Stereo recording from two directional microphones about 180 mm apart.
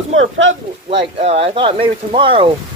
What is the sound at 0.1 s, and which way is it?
Speech, 90° right.